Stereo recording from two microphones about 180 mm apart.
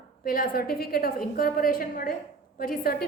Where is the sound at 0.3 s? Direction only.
55° left (ahead or behind).